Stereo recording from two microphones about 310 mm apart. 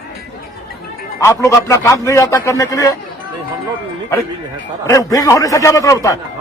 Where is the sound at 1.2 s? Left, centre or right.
Centre.